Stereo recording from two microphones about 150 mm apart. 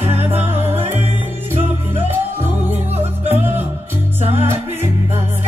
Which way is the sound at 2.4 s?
15° right (ahead or behind).